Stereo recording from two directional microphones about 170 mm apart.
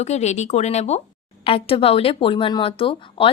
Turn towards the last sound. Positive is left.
turn(degrees=30)  # may be behind; listen again after turning